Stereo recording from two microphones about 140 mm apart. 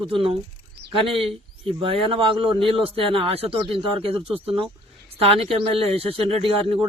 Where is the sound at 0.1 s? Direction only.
45° right (ahead or behind).